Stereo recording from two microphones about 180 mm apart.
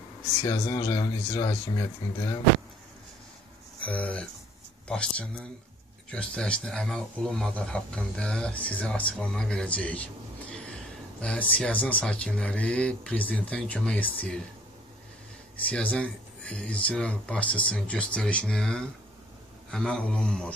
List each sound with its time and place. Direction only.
0.4 s speech: 20° left (ahead or behind)
3.8 s speech: 5° left (ahead or behind)
15.5 s speech: 10° left (ahead or behind)